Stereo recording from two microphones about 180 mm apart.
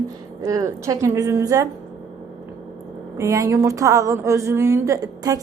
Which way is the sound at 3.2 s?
15° right (ahead or behind).